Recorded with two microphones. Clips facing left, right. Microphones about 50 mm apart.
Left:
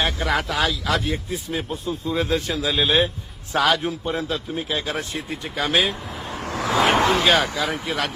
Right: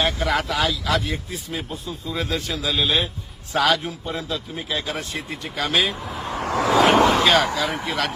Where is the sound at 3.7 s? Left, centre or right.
Left.